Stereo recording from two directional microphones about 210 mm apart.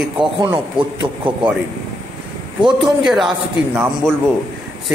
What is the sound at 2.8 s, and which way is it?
A man's voice, centre (ahead or behind).